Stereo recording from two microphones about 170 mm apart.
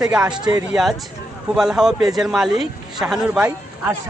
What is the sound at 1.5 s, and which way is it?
A man's voice, 5° right (ahead or behind).